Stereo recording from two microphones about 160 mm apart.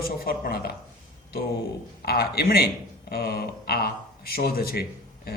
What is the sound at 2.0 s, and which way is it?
Speech, 75° left (ahead or behind).